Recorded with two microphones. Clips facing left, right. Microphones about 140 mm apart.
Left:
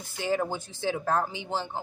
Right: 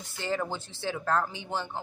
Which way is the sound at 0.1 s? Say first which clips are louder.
Left 3 dB; 15° left (ahead or behind).